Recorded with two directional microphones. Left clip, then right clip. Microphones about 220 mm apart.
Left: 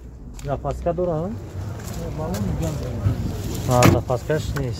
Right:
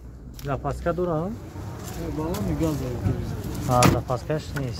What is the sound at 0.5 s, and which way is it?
Speech, 35° right (ahead or behind).